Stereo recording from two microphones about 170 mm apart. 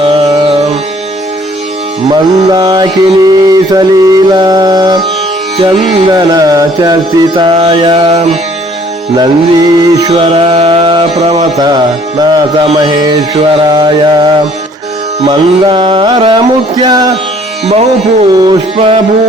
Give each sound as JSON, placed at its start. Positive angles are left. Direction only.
{"t": 0.5, "sound": "music", "side_deg": -40}
{"t": 2.1, "sound": "mantra", "side_deg": -25}
{"t": 7.3, "sound": "music", "side_deg": -35}
{"t": 9.1, "sound": "mantra", "side_deg": -20}
{"t": 10.1, "sound": "music", "side_deg": -35}
{"t": 11.5, "sound": "mantra", "side_deg": -25}
{"t": 17.7, "sound": "music", "side_deg": -40}
{"t": 18.3, "sound": "mantra", "side_deg": -20}